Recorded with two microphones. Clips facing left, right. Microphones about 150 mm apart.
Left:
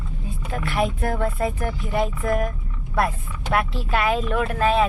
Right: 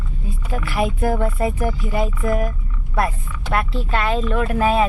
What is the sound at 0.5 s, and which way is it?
Speech, centre (ahead or behind).